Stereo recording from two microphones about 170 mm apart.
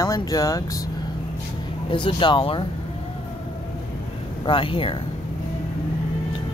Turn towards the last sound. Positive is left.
turn(degrees=30)  # may be behind; listen again after turning